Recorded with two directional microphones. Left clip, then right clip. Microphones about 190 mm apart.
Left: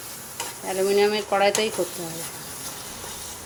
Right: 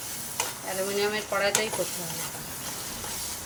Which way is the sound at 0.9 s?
45° left (ahead or behind).